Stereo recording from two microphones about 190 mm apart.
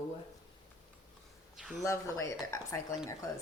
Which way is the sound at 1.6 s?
Centre (ahead or behind).